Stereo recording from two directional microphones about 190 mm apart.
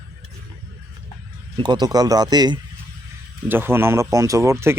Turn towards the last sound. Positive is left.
turn(degrees=-15)  # may be behind; listen again after turning